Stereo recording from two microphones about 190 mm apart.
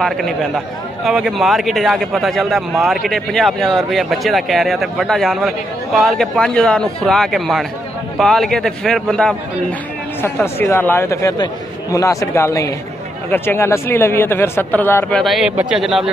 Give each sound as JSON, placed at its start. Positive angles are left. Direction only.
{"t": 0.0, "sound": "speech", "side_deg": 0}